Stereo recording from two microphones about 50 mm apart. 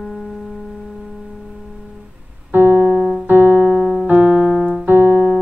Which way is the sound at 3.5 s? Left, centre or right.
Left.